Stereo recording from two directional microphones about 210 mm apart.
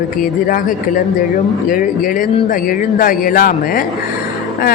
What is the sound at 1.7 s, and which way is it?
Speech, 40° left (ahead or behind).